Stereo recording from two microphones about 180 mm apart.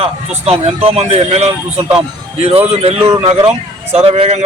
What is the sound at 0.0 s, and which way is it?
A man's voice, 35° right (ahead or behind).